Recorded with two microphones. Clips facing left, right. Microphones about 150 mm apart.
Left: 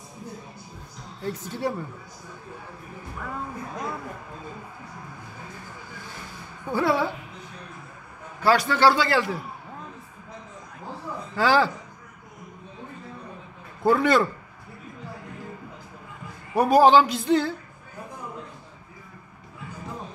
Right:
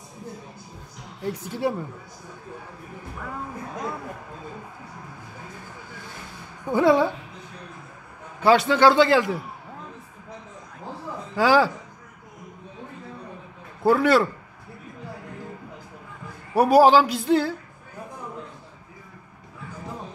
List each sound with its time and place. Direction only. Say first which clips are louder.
1.2 s speech: right 2 dB; 10° right (ahead or behind)
6.6 s a man's voice: right 5 dB; 20° right (ahead or behind)
8.4 s a man's voice: right 3 dB; 20° right (ahead or behind)
11.3 s speech: right 2 dB; 10° right (ahead or behind)
13.8 s a man's voice: right 2 dB; 5° right (ahead or behind)
16.5 s speech: right 1 dB; 10° right (ahead or behind)